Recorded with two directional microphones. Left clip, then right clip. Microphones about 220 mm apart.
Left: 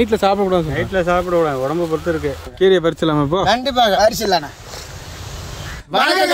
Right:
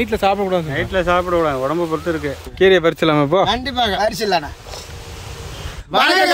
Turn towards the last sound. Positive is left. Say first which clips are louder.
# right 1 dB
turn(degrees=10)  # may be behind; listen again after turning